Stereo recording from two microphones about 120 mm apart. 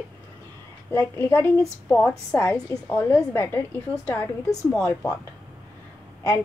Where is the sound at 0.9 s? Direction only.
20° left (ahead or behind).